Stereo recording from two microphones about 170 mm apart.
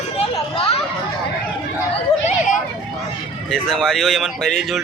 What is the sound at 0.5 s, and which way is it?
Chatter, 35° left (ahead or behind).